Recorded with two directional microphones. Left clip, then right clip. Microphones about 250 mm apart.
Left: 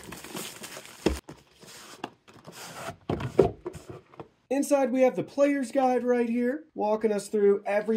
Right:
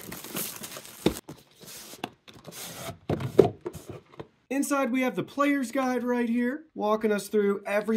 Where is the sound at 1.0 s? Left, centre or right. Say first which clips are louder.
Right 1 dB; centre.